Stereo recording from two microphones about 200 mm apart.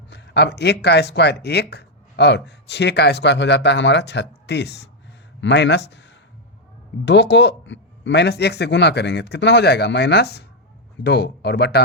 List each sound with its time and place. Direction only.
0.1 s speech: 60° left (ahead or behind)